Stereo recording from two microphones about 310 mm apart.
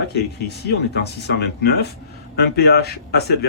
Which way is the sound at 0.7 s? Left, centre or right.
Left.